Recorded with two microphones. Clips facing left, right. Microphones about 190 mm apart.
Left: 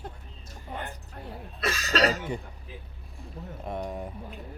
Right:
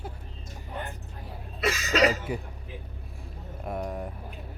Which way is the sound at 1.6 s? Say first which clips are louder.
Right 2 dB; 10° right (ahead or behind).